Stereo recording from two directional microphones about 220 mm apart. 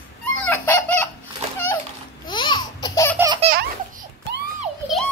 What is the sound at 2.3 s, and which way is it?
Laughter, 20° left (ahead or behind).